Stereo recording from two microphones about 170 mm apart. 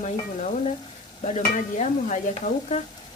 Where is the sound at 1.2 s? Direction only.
45° left (ahead or behind).